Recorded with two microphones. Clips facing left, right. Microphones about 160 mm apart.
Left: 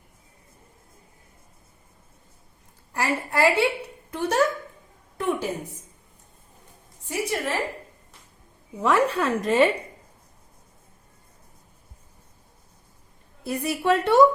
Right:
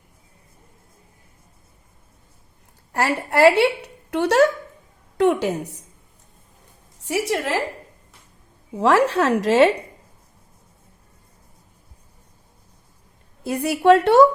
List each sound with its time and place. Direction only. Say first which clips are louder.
2.9 s a child's voice: right 5 dB; 70° right (ahead or behind)
7.0 s a woman's voice: right 5 dB; 90° right
8.8 s a woman's voice: right 5 dB; 80° right
13.4 s a woman's voice: right 7 dB; 70° right (ahead or behind)